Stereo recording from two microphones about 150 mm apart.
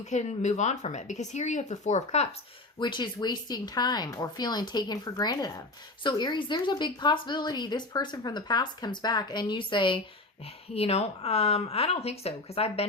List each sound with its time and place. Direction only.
0.0 s speech: 50° left (ahead or behind)
2.7 s speech: 30° left (ahead or behind)